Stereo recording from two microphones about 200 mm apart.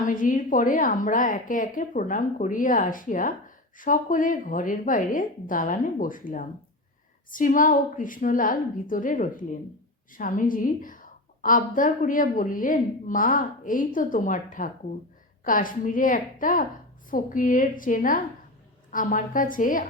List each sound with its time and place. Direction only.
0.2 s a woman's voice: 40° left (ahead or behind)